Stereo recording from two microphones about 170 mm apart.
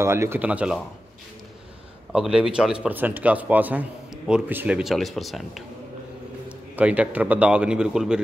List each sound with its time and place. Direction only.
0.0 s a man's voice: 15° right (ahead or behind)
2.1 s speech: 5° right (ahead or behind)
6.7 s a man's voice: 10° right (ahead or behind)